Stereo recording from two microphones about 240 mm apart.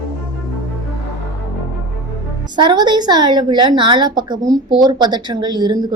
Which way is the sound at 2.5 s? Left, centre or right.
Centre.